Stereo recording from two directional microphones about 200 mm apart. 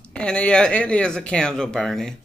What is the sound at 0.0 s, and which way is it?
Speech, 5° left (ahead or behind).